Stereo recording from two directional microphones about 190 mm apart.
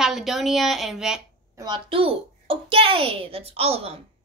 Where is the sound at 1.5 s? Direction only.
20° right (ahead or behind).